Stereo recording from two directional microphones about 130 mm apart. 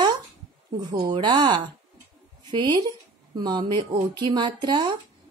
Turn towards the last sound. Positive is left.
turn(degrees=-35)  # may be behind; listen again after turning